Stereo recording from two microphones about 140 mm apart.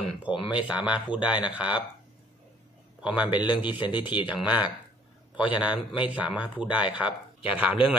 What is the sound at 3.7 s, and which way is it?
Speech, 35° left (ahead or behind).